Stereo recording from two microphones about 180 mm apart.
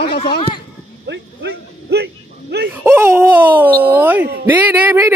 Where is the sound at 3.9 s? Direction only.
10° right (ahead or behind).